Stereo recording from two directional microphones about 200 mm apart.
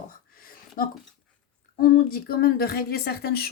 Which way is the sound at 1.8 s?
45° left (ahead or behind).